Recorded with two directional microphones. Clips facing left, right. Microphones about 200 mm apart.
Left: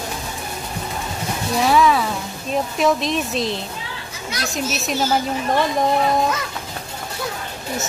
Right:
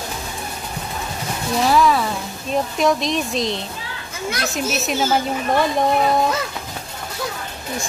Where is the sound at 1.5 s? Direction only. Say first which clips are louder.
Even; centre (ahead or behind).